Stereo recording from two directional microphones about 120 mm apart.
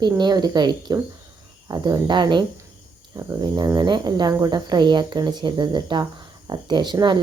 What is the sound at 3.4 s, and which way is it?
Speech, 35° right (ahead or behind).